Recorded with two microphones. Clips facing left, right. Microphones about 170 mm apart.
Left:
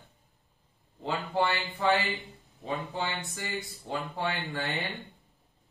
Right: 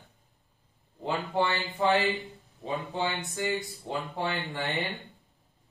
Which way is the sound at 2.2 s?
20° right (ahead or behind).